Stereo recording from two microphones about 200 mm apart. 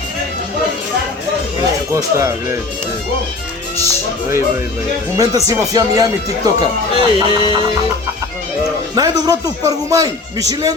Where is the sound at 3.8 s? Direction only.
15° right (ahead or behind).